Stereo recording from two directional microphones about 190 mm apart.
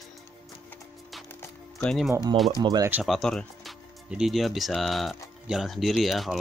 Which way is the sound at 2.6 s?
20° right (ahead or behind).